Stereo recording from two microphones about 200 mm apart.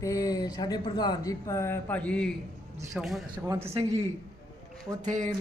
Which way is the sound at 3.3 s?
20° right (ahead or behind).